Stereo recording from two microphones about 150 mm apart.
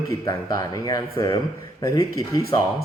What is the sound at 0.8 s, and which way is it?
Speech, 25° left (ahead or behind).